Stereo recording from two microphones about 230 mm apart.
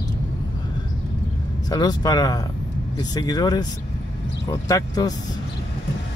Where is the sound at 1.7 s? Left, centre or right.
Centre.